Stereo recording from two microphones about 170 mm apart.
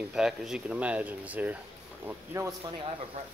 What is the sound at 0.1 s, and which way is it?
Speech, 5° right (ahead or behind).